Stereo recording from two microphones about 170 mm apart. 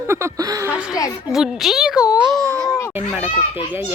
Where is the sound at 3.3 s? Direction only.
35° left (ahead or behind).